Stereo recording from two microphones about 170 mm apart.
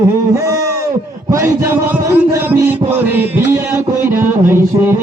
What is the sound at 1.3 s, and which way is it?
A man's voice, 15° right (ahead or behind).